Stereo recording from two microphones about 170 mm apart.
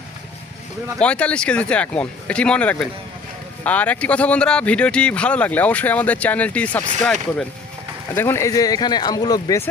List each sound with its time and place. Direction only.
0.9 s speech: 5° left (ahead or behind)
8.1 s speech: 15° left (ahead or behind)